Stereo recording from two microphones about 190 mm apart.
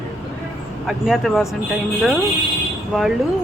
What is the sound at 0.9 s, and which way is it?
Speech, centre (ahead or behind).